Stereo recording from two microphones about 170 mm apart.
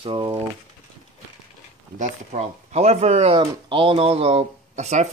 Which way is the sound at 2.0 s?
45° right (ahead or behind).